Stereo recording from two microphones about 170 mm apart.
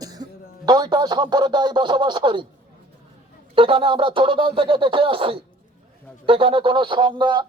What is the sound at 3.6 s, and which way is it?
Speech, 30° right (ahead or behind).